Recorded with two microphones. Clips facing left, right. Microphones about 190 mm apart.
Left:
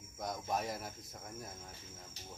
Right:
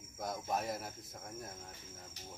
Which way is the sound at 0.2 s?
Centre (ahead or behind).